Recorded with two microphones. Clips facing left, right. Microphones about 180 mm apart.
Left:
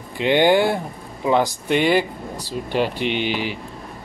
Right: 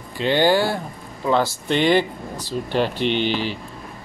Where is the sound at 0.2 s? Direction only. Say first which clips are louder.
Left 2 dB; 20° left (ahead or behind).